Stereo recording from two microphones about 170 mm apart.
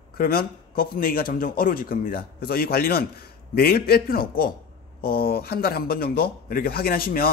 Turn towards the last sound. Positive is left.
turn(degrees=60)  # may be behind; listen again after turning